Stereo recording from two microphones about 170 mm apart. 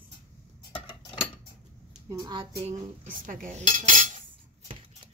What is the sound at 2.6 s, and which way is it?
Cutlery, 50° right (ahead or behind).